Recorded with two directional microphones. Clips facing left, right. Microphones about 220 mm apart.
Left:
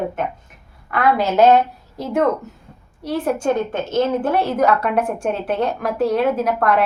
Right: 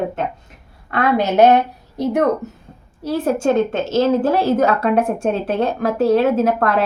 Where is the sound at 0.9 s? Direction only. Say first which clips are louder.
Right 1 dB; 20° right (ahead or behind).